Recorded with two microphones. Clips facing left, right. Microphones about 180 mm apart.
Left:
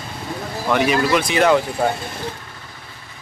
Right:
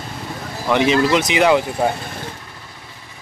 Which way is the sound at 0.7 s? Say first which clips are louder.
Right 2 dB; 20° right (ahead or behind).